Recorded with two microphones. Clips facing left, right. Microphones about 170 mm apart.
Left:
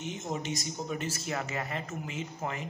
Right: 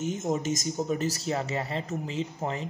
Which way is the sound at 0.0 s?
45° right (ahead or behind).